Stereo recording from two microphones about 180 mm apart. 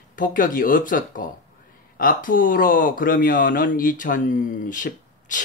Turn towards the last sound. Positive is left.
turn(degrees=45)  # may be behind; listen again after turning